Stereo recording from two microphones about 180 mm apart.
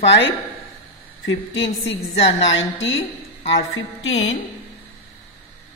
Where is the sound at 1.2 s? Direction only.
90° left.